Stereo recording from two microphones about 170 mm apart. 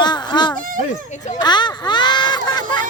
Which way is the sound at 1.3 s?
25° left (ahead or behind).